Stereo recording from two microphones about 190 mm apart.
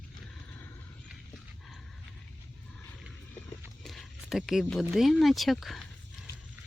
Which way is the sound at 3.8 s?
Centre (ahead or behind).